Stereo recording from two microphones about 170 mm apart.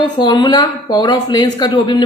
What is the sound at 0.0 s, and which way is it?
Speech, 25° left (ahead or behind).